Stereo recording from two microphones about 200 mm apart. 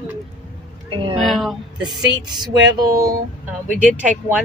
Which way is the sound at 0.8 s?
25° right (ahead or behind).